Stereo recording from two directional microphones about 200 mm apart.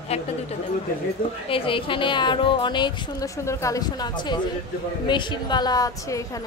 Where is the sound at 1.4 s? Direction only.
25° left (ahead or behind).